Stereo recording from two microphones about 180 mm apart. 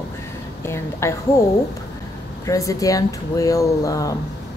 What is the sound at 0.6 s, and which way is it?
Speech, 15° left (ahead or behind).